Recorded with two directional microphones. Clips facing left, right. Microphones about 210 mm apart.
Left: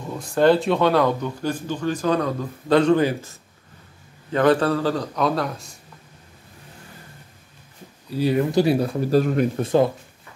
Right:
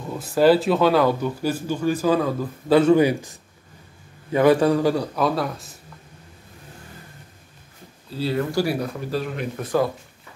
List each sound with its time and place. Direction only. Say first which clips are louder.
0.0 s a man's voice: right 1 dB; 5° right (ahead or behind)
8.1 s speech: left 4 dB; 15° left (ahead or behind)
9.1 s speech: left 10 dB; 45° left (ahead or behind)
9.6 s speech: left 1 dB; 25° left (ahead or behind)